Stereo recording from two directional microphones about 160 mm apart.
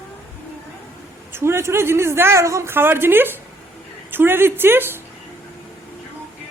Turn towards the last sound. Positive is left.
turn(degrees=-15)  # may be behind; listen again after turning